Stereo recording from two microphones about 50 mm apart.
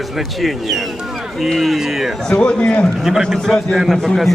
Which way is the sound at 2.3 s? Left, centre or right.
Left.